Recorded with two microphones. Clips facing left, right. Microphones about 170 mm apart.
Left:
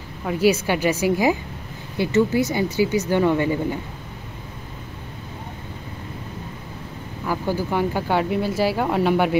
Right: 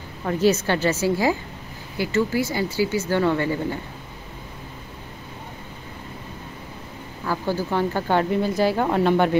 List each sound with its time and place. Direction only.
0.2 s speech: 10° left (ahead or behind)
7.2 s speech: 15° left (ahead or behind)